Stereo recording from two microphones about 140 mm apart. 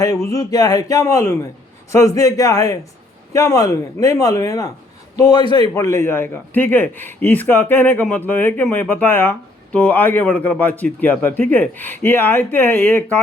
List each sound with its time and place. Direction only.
0.3 s speech: 25° left (ahead or behind)
5.7 s speech: 20° left (ahead or behind)